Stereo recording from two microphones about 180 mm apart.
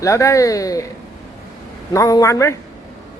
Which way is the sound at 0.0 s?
20° left (ahead or behind).